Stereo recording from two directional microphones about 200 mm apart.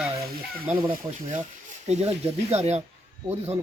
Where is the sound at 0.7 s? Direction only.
25° right (ahead or behind).